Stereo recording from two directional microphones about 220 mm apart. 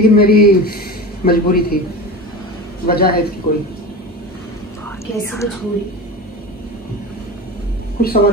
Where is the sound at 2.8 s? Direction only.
45° left (ahead or behind).